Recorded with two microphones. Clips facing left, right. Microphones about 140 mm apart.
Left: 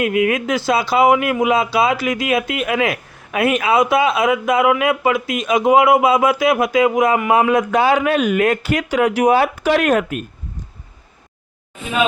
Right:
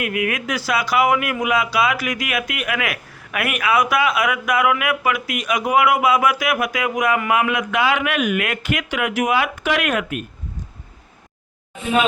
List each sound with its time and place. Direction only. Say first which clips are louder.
0.0 s speech: left 6 dB; 25° left (ahead or behind)